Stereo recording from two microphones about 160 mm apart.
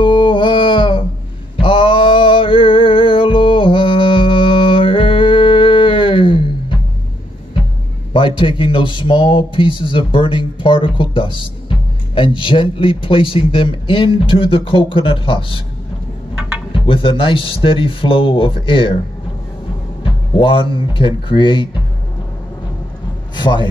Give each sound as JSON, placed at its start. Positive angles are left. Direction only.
{"t": 0.0, "sound": "a sound", "side_deg": 30}
{"t": 1.6, "sound": "music", "side_deg": 35}
{"t": 8.1, "sound": "a man's voice", "side_deg": 30}
{"t": 16.7, "sound": "a man's voice", "side_deg": 35}
{"t": 20.0, "sound": "speech", "side_deg": 35}
{"t": 23.3, "sound": "a man's voice", "side_deg": 30}